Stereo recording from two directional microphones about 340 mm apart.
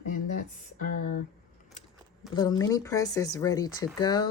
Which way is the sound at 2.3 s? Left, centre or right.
Centre.